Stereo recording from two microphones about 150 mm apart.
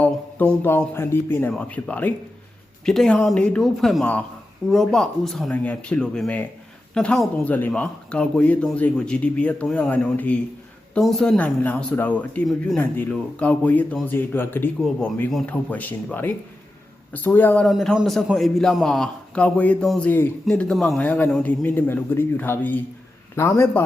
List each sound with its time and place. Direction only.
0.0 s a man's voice: 10° left (ahead or behind)
17.7 s a man's voice: centre (ahead or behind); by 23.8 s 15° left (ahead or behind)